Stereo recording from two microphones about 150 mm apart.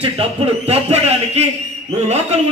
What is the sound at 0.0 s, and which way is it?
A man's voice, 40° right (ahead or behind).